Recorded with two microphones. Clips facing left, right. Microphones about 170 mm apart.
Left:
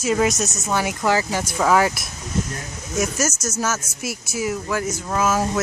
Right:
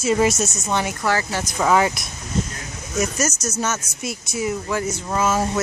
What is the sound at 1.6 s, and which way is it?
Speech, centre (ahead or behind).